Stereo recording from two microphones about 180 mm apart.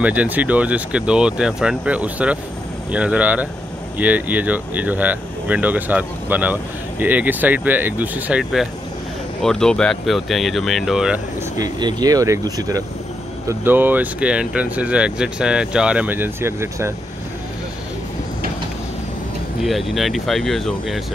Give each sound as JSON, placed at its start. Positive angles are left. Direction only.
{"t": 0.0, "sound": "speech", "side_deg": -10}
{"t": 11.5, "sound": "speech", "side_deg": -20}
{"t": 19.6, "sound": "speech", "side_deg": 0}